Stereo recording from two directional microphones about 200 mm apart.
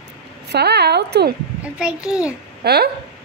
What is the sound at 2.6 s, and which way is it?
Speech, 55° right (ahead or behind).